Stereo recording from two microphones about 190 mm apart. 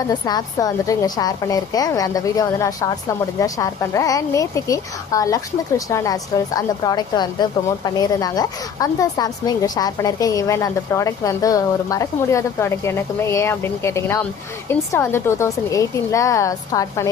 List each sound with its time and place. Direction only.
0.1 s a woman's voice: 20° left (ahead or behind)